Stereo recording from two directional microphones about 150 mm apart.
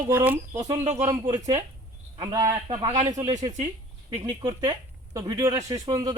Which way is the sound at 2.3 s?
25° right (ahead or behind).